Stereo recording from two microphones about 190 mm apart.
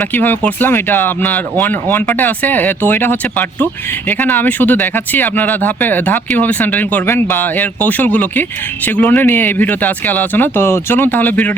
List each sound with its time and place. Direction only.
0.0 s speech: 10° left (ahead or behind)